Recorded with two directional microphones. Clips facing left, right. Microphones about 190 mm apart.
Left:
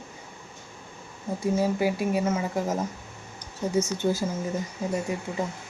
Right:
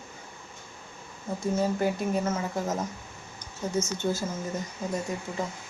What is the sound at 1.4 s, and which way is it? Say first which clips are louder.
Speech: left 2 dB; 10° left (ahead or behind).